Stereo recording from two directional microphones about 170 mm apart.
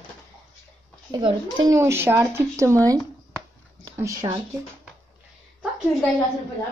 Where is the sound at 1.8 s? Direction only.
15° right (ahead or behind).